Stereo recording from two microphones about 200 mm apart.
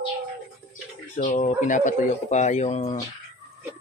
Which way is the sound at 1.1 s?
40° left (ahead or behind).